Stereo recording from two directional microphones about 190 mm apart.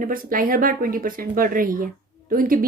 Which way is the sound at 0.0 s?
45° right (ahead or behind).